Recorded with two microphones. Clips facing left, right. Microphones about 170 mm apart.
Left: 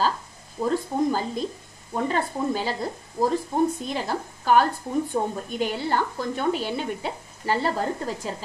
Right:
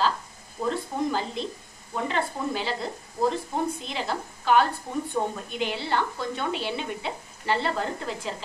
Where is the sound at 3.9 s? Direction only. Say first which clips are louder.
Left 3 dB; 45° left (ahead or behind).